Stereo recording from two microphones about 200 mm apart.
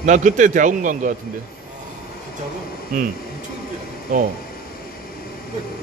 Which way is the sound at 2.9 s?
45° right (ahead or behind).